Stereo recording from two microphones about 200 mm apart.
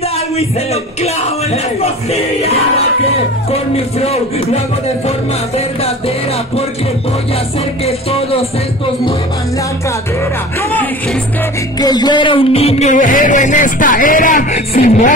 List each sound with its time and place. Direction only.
1.0 s music: 30° left (ahead or behind)
3.7 s music: 30° left (ahead or behind)
7.8 s music: 30° left (ahead or behind)
11.8 s music: 20° left (ahead or behind)